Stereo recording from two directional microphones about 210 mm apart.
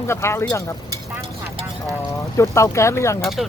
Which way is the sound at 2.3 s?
15° left (ahead or behind).